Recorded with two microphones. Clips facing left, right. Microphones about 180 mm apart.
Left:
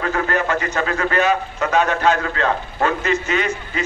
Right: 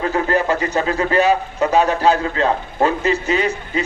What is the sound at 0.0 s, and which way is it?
A man's voice, 25° right (ahead or behind).